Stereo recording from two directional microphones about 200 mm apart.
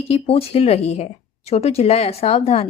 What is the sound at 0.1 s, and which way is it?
A woman's voice, 30° left (ahead or behind).